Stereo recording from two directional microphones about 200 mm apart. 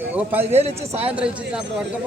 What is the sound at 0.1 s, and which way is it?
A man's voice, 10° right (ahead or behind).